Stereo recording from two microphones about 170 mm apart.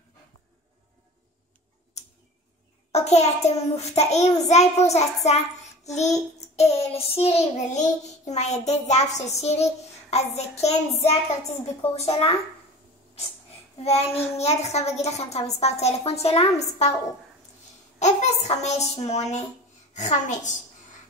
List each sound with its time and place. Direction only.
2.9 s a woman's voice: 40° left (ahead or behind)
6.5 s a woman's voice: 40° left (ahead or behind)
13.8 s a woman's voice: 35° left (ahead or behind)
17.9 s a woman's voice: 40° left (ahead or behind)